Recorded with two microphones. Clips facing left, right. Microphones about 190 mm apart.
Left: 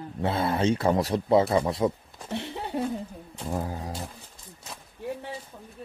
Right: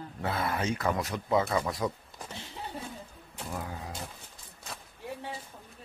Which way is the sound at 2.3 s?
65° left (ahead or behind).